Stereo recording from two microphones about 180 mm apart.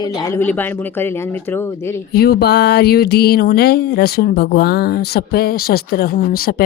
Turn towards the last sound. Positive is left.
turn(degrees=55)  # may be behind; listen again after turning